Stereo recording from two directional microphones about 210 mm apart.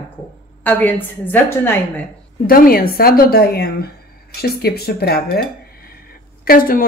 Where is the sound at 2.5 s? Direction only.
45° left (ahead or behind).